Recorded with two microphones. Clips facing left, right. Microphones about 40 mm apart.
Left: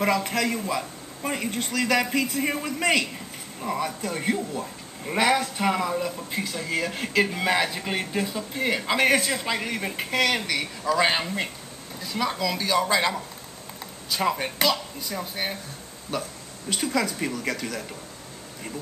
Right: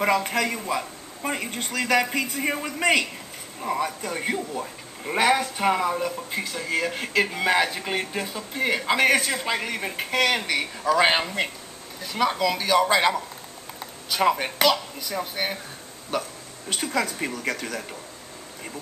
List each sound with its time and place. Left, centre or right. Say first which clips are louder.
0.0 s speech: right 1 dB; centre
6.3 s speech: left 1 dB; centre
14.1 s speech: right 3 dB; centre
16.1 s a sound: right 2 dB; centre
16.7 s a woman's voice: even; centre